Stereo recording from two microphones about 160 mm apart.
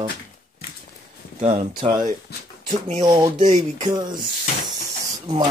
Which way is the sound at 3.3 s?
45° right (ahead or behind).